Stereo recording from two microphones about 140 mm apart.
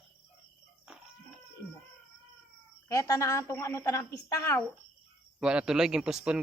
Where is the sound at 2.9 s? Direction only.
20° left (ahead or behind).